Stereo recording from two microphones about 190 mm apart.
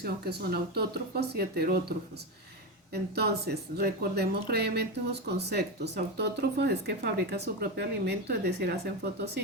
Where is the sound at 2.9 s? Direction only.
60° right (ahead or behind).